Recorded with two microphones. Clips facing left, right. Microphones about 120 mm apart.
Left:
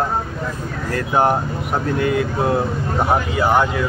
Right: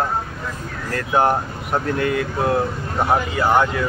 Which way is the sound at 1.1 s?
10° left (ahead or behind).